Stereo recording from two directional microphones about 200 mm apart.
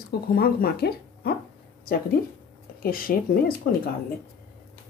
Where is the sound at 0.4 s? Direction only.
50° left (ahead or behind).